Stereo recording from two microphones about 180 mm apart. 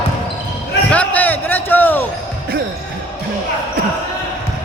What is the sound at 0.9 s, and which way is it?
Basketball bounce, 10° left (ahead or behind).